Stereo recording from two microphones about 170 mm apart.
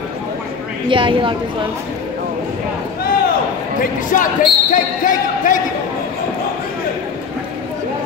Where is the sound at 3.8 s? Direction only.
50° left (ahead or behind).